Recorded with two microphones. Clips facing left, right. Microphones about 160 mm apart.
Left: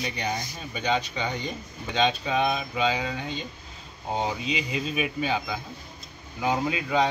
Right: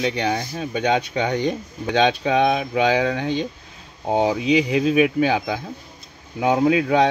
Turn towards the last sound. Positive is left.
turn(degrees=-80)